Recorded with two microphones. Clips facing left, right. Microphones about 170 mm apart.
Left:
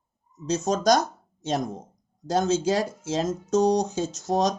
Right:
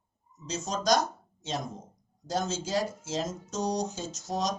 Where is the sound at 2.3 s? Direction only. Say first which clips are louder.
Left 8 dB; 60° left (ahead or behind).